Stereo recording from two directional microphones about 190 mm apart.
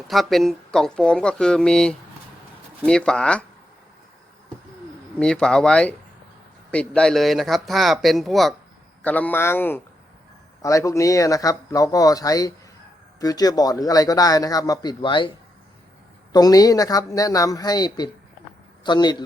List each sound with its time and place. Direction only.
0.1 s speech: centre (ahead or behind)
5.2 s speech: 5° left (ahead or behind); by 15.3 s 25° left (ahead or behind)
16.3 s speech: 20° left (ahead or behind)